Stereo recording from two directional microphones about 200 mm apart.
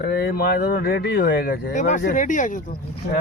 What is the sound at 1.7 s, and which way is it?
Speech, 40° left (ahead or behind).